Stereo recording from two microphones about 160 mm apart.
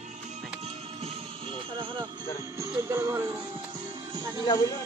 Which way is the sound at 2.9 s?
15° right (ahead or behind).